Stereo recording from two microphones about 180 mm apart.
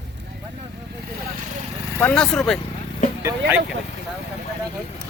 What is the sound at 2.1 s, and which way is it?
Speech, 5° left (ahead or behind).